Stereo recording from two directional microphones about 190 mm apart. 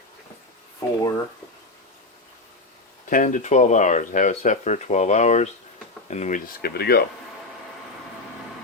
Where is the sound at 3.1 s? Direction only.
40° left (ahead or behind).